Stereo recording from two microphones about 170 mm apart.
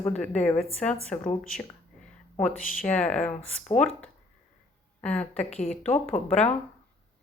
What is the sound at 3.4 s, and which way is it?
Speech, 40° left (ahead or behind).